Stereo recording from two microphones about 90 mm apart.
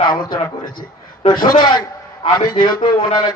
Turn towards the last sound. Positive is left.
turn(degrees=55)  # may be behind; listen again after turning